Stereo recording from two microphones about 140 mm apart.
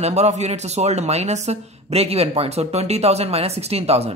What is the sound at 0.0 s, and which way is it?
Speech, 50° right (ahead or behind).